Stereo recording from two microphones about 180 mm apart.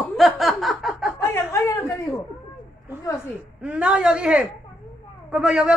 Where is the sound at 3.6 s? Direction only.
5° right (ahead or behind).